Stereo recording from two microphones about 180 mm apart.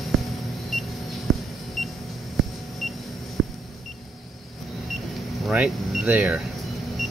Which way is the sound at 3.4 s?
Centre (ahead or behind).